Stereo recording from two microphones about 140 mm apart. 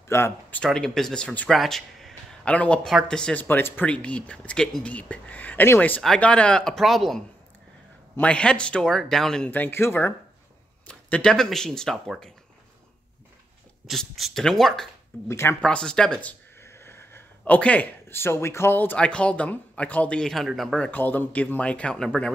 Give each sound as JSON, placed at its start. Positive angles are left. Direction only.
{"t": 0.1, "sound": "speech", "side_deg": 15}
{"t": 0.7, "sound": "speech", "side_deg": 0}
{"t": 8.2, "sound": "speech", "side_deg": 10}
{"t": 13.8, "sound": "speech", "side_deg": 0}
{"t": 15.2, "sound": "speech", "side_deg": 20}
{"t": 15.6, "sound": "speech", "side_deg": 5}
{"t": 20.9, "sound": "speech", "side_deg": 15}